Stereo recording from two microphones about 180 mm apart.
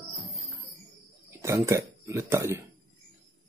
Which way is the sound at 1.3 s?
15° right (ahead or behind).